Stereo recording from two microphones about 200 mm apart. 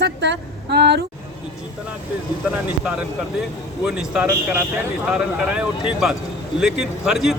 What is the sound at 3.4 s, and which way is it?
A man's voice, centre (ahead or behind).